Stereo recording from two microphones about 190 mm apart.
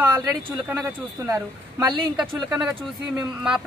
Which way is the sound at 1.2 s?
20° right (ahead or behind).